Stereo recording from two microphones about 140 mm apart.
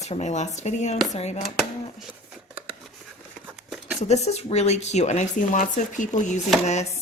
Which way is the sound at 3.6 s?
Centre (ahead or behind).